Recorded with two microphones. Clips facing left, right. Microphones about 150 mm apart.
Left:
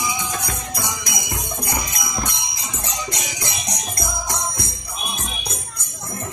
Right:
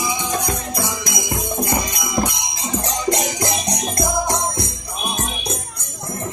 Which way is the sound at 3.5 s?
30° right (ahead or behind).